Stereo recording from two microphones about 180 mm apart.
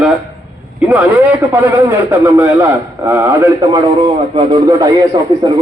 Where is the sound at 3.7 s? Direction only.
25° right (ahead or behind).